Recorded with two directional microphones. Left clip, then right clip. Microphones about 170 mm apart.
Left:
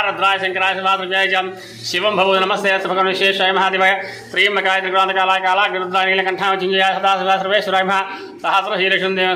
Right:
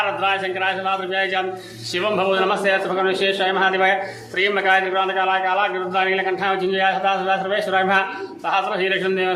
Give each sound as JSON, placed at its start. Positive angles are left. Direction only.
{"t": 0.0, "sound": "a man's voice", "side_deg": 20}